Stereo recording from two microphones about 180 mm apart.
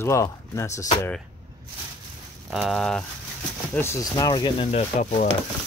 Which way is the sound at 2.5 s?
Centre (ahead or behind).